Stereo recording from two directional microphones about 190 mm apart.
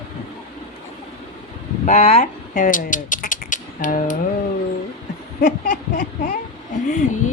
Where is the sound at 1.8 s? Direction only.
35° left (ahead or behind).